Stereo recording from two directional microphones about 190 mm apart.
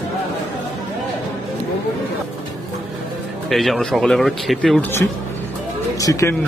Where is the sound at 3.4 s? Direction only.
Centre (ahead or behind); by 6.3 s 15° left (ahead or behind).